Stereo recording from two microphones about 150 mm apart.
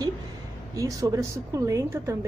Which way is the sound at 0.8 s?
20° right (ahead or behind).